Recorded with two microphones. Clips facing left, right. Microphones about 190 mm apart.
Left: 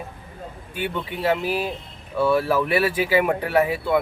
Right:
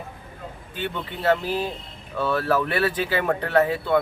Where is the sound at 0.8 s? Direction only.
10° left (ahead or behind).